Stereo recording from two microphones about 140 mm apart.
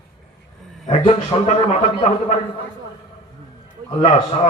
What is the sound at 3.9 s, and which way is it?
Speech, 45° left (ahead or behind).